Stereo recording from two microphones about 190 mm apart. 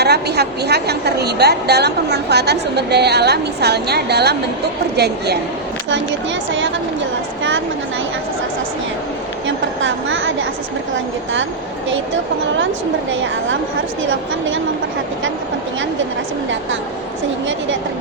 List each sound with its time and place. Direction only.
0.0 s a woman's voice: 60° right (ahead or behind)
9.8 s a woman's voice: 90° right
11.9 s speech: 85° right
14.0 s a woman's voice: 90° right